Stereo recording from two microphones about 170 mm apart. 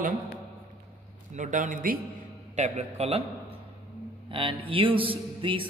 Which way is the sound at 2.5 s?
40° right (ahead or behind).